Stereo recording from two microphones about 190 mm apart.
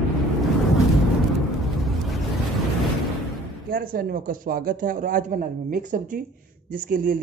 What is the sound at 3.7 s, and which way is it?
A man's voice, 50° right (ahead or behind).